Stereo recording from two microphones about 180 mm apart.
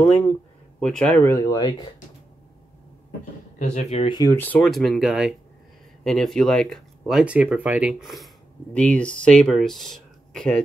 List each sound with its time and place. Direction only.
0.0 s speech: 5° left (ahead or behind); by 1.9 s 20° left (ahead or behind)
3.5 s speech: 45° left (ahead or behind)
4.0 s speech: 25° left (ahead or behind); by 10.6 s 5° left (ahead or behind)